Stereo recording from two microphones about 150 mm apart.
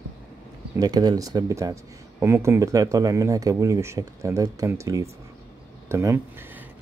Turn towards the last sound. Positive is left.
turn(degrees=-15)  # may be behind; listen again after turning